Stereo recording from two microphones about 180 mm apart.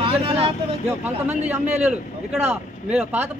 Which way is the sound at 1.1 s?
10° right (ahead or behind).